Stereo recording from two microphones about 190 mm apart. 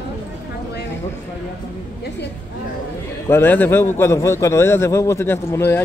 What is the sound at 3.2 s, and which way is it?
A man's voice, 10° left (ahead or behind).